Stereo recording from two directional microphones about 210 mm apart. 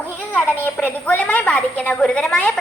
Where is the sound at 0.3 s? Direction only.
10° left (ahead or behind).